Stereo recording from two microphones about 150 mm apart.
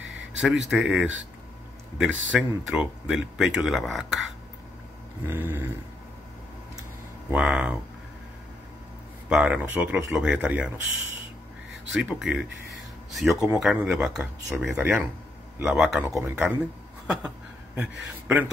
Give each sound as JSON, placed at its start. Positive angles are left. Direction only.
{"t": 0.4, "sound": "a man's voice", "side_deg": -5}
{"t": 7.2, "sound": "a man's voice", "side_deg": -5}
{"t": 9.3, "sound": "speech", "side_deg": -5}
{"t": 11.9, "sound": "a man's voice", "side_deg": -5}
{"t": 14.6, "sound": "a man's voice", "side_deg": -15}
{"t": 15.6, "sound": "a man's voice", "side_deg": -5}
{"t": 17.7, "sound": "a man's voice", "side_deg": -10}